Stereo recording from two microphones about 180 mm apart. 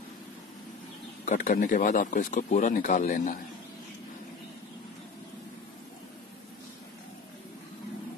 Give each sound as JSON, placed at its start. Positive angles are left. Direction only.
{"t": 1.2, "sound": "speech", "side_deg": 45}